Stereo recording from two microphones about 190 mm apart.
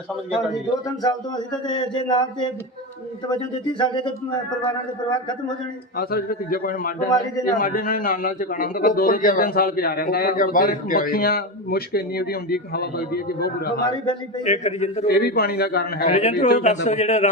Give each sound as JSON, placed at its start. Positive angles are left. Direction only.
{"t": 1.6, "sound": "speech", "side_deg": 25}
{"t": 6.0, "sound": "a man's voice", "side_deg": 50}
{"t": 13.8, "sound": "speech", "side_deg": 25}
{"t": 14.4, "sound": "a man's voice", "side_deg": 35}
{"t": 15.0, "sound": "a man's voice", "side_deg": 55}
{"t": 16.0, "sound": "a man's voice", "side_deg": 40}